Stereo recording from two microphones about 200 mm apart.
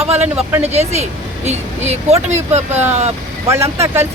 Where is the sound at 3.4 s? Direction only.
15° right (ahead or behind).